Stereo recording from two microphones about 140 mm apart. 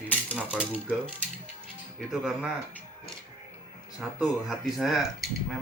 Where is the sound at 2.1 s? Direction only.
5° right (ahead or behind).